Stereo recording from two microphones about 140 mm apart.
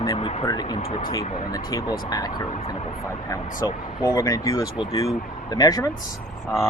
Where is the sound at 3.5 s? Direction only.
25° left (ahead or behind).